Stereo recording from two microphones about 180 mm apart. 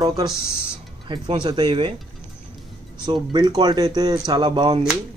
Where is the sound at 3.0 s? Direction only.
25° right (ahead or behind).